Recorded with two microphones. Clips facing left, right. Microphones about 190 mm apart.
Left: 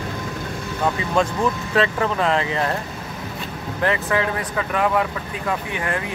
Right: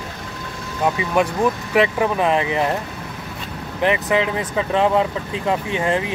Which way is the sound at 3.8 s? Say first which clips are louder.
Right 3 dB; 20° right (ahead or behind).